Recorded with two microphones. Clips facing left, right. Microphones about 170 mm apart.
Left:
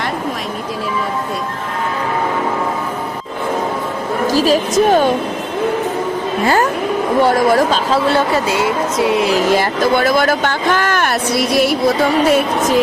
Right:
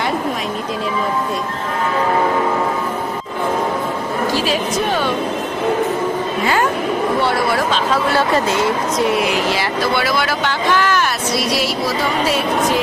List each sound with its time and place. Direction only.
4.3 s speech: 40° left (ahead or behind)
7.2 s speech: 45° left (ahead or behind)
9.5 s speech: 45° left (ahead or behind)